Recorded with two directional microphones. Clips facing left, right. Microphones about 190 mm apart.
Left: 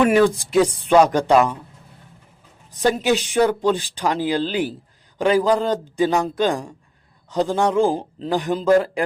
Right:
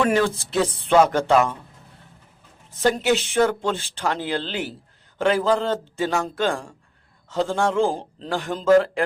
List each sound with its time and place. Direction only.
0.0 s speech: 15° left (ahead or behind)
3.0 s speech: 15° left (ahead or behind)